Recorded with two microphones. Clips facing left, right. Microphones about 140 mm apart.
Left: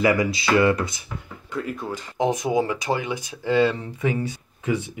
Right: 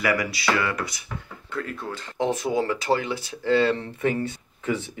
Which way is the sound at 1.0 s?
15° left (ahead or behind).